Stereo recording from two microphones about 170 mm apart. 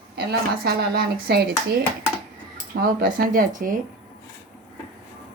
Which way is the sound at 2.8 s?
55° right (ahead or behind).